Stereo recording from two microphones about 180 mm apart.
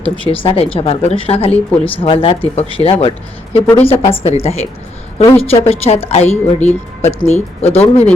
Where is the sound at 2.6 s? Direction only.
30° left (ahead or behind).